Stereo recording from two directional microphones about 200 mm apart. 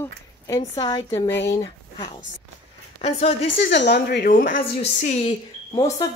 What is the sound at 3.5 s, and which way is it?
Speech, 65° left (ahead or behind).